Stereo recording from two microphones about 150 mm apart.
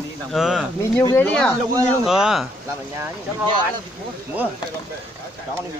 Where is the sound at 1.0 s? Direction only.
20° left (ahead or behind).